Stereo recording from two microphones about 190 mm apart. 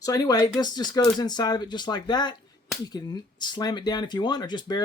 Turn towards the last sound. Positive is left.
turn(degrees=20)  # may be behind; listen again after turning